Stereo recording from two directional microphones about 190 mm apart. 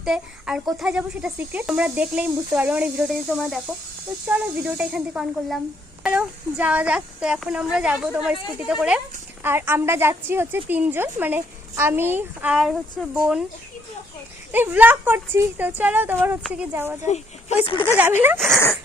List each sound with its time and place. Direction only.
0.0 s a woman's voice: 5° right (ahead or behind)
14.5 s a woman's voice: 10° right (ahead or behind)
17.1 s speech: 35° left (ahead or behind)
18.3 s speech: centre (ahead or behind)